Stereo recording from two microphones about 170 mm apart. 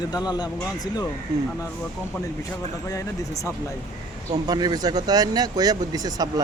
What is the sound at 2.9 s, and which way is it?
Speech, 20° left (ahead or behind).